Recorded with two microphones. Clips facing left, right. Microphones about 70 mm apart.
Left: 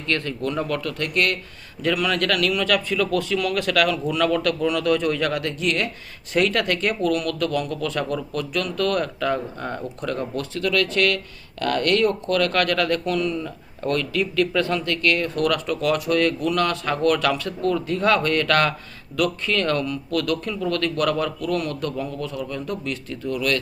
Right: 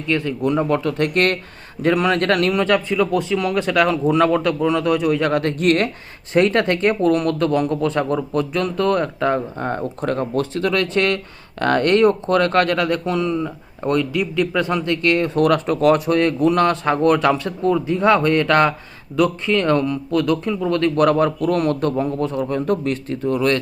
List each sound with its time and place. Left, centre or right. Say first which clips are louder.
0.1 s speech: right 5 dB; centre
5.2 s speech: right 6 dB; right
6.3 s speech: right 5 dB; right